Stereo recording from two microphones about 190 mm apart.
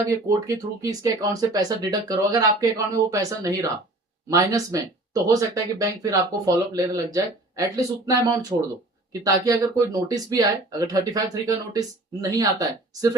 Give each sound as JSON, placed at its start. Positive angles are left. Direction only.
{"t": 0.1, "sound": "speech", "side_deg": -15}